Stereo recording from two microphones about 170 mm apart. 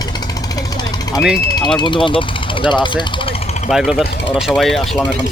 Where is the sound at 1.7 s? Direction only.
30° left (ahead or behind).